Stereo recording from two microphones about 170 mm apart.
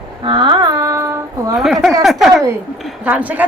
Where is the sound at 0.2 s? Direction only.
30° right (ahead or behind).